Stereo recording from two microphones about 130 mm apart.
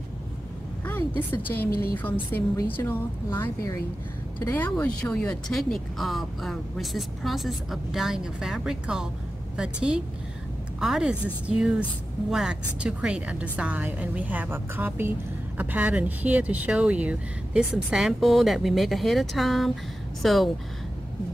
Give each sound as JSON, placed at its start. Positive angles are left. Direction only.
{"t": 0.8, "sound": "a woman's voice", "side_deg": 15}